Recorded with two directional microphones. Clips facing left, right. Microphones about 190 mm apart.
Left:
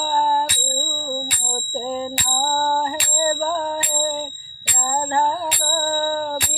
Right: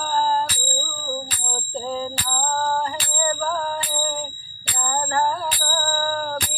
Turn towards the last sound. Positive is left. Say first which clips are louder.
# left 3 dB
turn(degrees=25)  # may be behind; listen again after turning